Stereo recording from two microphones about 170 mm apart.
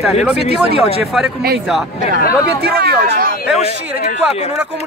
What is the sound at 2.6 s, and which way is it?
Speech, 70° right (ahead or behind).